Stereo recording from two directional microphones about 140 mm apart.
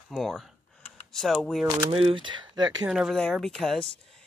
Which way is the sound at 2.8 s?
5° right (ahead or behind).